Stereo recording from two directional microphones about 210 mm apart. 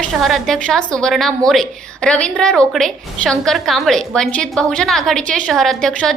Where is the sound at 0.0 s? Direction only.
Centre (ahead or behind).